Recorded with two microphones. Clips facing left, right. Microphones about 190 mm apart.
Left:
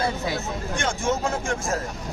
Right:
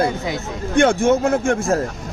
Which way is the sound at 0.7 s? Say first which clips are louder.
Right 12 dB; 60° right (ahead or behind).